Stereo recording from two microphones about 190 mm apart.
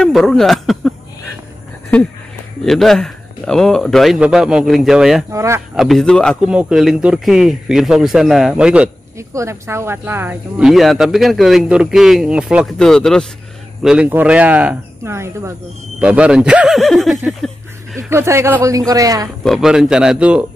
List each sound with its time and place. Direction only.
0.0 s a sound: 5° left (ahead or behind)
2.6 s speech: centre (ahead or behind)
5.3 s speech: 15° right (ahead or behind)
5.8 s speech: centre (ahead or behind)
18.1 s speech: 15° right (ahead or behind)
19.4 s speech: centre (ahead or behind)